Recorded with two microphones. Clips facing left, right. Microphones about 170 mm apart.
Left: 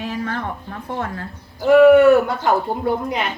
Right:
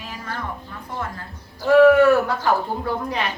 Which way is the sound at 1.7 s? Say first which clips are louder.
Left 3 dB; 25° left (ahead or behind).